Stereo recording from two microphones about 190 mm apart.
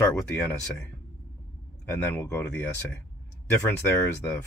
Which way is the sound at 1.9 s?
10° left (ahead or behind).